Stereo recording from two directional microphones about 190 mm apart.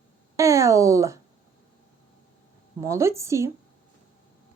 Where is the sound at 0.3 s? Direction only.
15° right (ahead or behind).